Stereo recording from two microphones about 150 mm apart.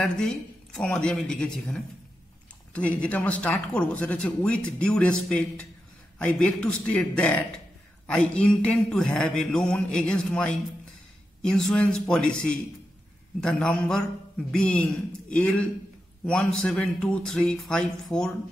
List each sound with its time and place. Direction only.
0.0 s mantra: 5° left (ahead or behind)
2.7 s speech: 10° left (ahead or behind)
6.1 s mantra: 5° left (ahead or behind)